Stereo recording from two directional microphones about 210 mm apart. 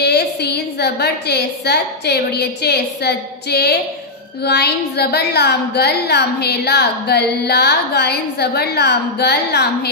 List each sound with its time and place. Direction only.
0.0 s speech: 50° left (ahead or behind)